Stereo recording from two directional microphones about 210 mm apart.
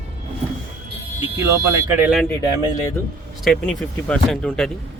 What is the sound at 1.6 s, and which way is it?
Speech, 10° right (ahead or behind).